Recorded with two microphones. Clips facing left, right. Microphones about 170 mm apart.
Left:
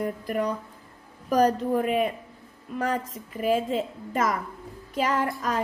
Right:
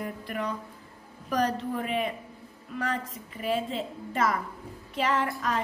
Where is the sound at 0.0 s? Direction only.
40° left (ahead or behind).